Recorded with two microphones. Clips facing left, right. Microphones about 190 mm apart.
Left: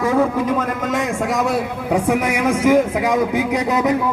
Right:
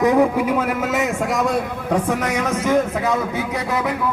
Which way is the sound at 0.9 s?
Centre (ahead or behind).